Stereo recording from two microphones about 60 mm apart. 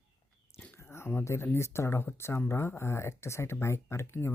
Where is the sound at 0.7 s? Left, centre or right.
Left.